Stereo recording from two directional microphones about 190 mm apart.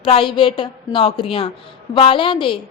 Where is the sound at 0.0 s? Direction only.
30° left (ahead or behind).